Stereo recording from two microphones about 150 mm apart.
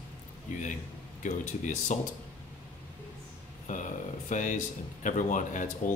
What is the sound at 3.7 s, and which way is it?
Speech, 60° left (ahead or behind).